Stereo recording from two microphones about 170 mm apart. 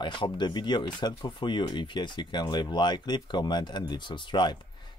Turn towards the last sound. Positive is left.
turn(degrees=25)  # may be behind; listen again after turning